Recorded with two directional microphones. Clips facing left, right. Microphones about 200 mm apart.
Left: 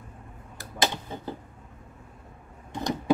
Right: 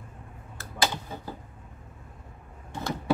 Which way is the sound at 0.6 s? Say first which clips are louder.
Left 1 dB; 20° left (ahead or behind).